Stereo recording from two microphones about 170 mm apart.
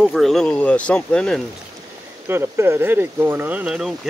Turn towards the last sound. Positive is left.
turn(degrees=-5)  # may be behind; listen again after turning